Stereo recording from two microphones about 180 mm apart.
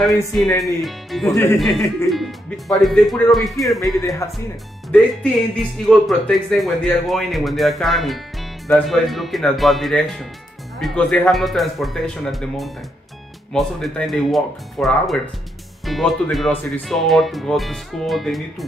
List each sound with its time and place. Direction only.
0.6 s speech: centre (ahead or behind)
1.2 s speech: 15° left (ahead or behind)
1.6 s speech: centre (ahead or behind)
4.2 s speech: 15° left (ahead or behind)
4.8 s speech: 5° left (ahead or behind)